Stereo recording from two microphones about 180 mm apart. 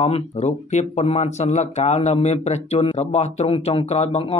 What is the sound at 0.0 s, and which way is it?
Speech, 35° left (ahead or behind).